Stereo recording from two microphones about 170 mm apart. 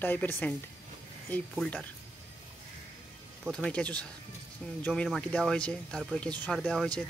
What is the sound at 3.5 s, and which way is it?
Speech, 5° left (ahead or behind).